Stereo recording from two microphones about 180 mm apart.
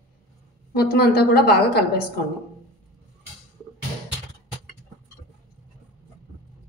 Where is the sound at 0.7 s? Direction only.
60° left (ahead or behind).